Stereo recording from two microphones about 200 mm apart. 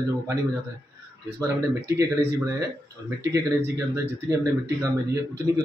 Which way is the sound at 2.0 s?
15° right (ahead or behind).